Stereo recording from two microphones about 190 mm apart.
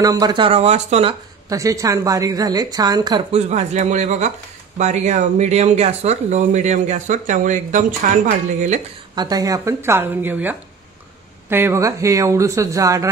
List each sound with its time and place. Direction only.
0.0 s speech: 20° right (ahead or behind); by 1.1 s 35° right (ahead or behind)
1.5 s a woman's voice: 15° right (ahead or behind); by 8.8 s 40° right (ahead or behind)
9.1 s speech: 20° right (ahead or behind)